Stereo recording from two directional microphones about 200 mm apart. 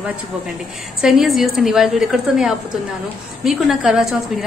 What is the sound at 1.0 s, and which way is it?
A woman's voice, centre (ahead or behind).